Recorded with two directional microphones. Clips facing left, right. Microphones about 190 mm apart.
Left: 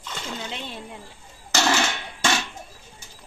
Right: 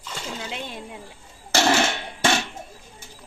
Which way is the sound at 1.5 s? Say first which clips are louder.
Right 3 dB; 30° right (ahead or behind).